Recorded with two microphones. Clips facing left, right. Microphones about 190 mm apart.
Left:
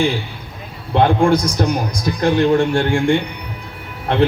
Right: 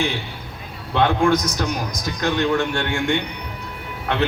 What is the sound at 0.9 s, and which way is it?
A man's voice, 30° left (ahead or behind).